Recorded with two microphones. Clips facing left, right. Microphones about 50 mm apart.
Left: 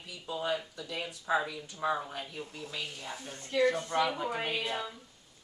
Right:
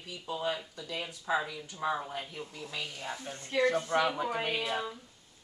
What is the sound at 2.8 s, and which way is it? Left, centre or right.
Speech, right.